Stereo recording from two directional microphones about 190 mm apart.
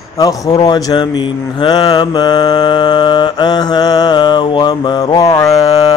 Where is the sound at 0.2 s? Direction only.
20° left (ahead or behind).